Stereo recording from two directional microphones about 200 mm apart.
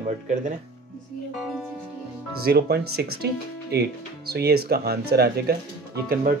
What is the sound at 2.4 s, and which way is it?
Speech, 50° right (ahead or behind).